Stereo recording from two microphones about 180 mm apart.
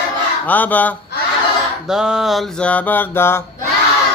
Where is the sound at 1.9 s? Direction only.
5° right (ahead or behind); by 3.4 s 15° left (ahead or behind).